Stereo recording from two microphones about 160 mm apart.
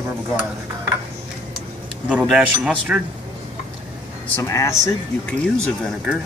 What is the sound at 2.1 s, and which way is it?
Speech, 5° right (ahead or behind).